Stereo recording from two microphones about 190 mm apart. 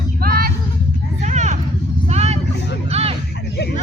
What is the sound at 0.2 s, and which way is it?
Music, 50° right (ahead or behind).